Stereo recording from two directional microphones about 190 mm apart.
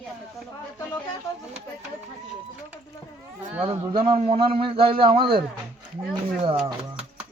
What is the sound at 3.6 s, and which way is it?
A man's voice, 25° right (ahead or behind).